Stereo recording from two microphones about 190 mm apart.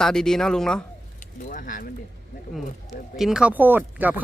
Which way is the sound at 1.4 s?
45° left (ahead or behind).